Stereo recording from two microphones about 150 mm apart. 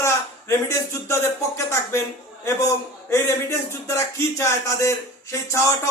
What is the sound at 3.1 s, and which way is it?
A man's voice, 20° left (ahead or behind).